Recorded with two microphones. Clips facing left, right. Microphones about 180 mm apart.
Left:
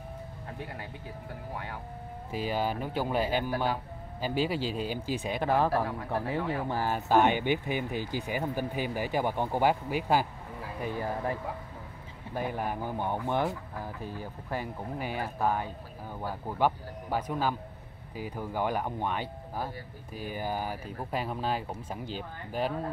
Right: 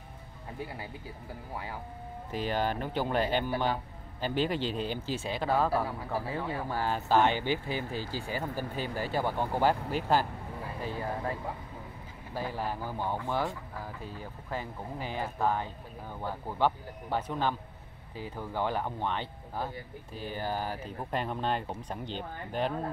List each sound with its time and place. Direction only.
2.3 s speech: 10° left (ahead or behind)
5.9 s speech: 5° right (ahead or behind)
6.7 s speech: 15° left (ahead or behind)
12.4 s speech: 15° left (ahead or behind)